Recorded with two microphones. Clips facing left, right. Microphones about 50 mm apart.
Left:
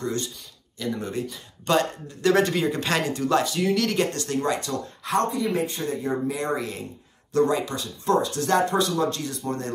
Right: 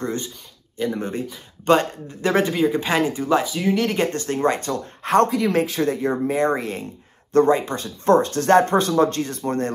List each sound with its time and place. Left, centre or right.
0.7 s speech: right
2.5 s speech: centre; by 5.2 s right
5.2 s speech: right
6.2 s speech: right